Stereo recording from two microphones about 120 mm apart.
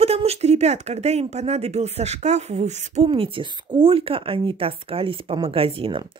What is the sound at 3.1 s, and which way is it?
Speech, 45° right (ahead or behind).